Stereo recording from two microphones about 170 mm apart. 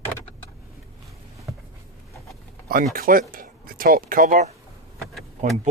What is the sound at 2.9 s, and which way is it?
Speech, 55° right (ahead or behind).